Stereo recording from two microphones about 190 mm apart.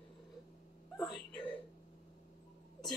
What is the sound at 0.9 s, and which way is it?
Speech, centre (ahead or behind).